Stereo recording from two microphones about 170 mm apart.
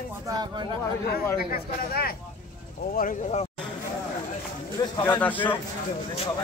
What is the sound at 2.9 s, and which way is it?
Speech, 55° left (ahead or behind).